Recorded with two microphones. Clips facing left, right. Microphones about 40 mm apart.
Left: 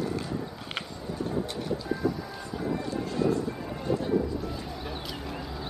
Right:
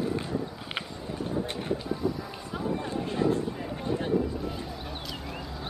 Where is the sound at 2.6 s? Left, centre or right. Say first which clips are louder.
Even; right.